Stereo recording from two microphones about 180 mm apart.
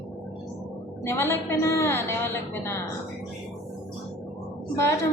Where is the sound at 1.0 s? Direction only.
15° left (ahead or behind).